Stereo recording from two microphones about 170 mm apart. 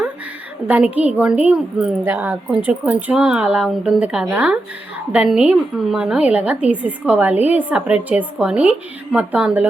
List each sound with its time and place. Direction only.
0.7 s a woman's voice: 10° right (ahead or behind)